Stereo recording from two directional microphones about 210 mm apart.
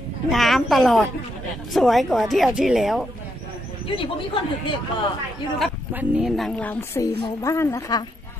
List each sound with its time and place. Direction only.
0.3 s a woman's voice: centre (ahead or behind)
3.8 s speech: 25° left (ahead or behind)
5.6 s speech: 5° right (ahead or behind); by 8.0 s 15° left (ahead or behind)